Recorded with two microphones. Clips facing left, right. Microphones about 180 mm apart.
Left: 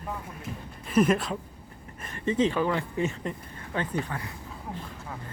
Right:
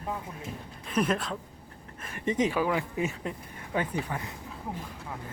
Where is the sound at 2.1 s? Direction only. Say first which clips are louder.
Left 2 dB; 15° right (ahead or behind).